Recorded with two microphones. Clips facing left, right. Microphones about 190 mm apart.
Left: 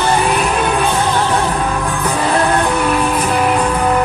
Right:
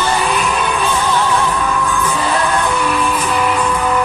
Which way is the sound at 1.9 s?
35° left (ahead or behind).